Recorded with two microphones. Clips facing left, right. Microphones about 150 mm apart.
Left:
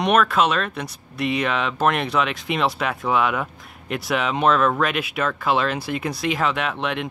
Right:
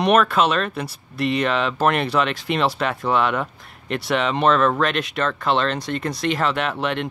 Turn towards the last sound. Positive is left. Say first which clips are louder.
# right 2 dB
turn(degrees=0)  # may be behind; listen again after turning